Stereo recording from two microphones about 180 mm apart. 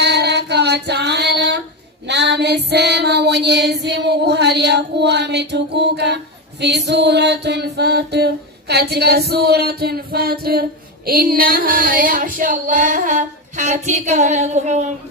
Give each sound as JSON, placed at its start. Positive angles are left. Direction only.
{"t": 0.0, "sound": "female singing", "side_deg": -65}
{"t": 6.9, "sound": "mantra", "side_deg": -70}